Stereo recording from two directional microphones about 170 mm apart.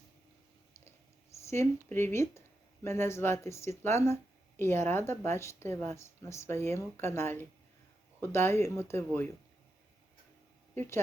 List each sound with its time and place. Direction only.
1.5 s speech: 15° left (ahead or behind)
10.8 s speech: 15° left (ahead or behind)